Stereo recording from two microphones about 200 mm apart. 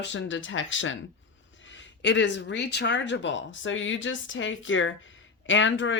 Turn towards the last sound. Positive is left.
turn(degrees=70)  # may be behind; listen again after turning